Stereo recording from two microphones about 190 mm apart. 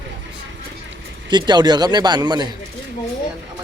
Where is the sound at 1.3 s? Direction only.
20° right (ahead or behind).